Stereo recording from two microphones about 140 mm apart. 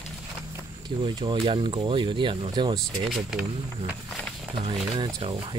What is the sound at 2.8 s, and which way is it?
Speech, centre (ahead or behind).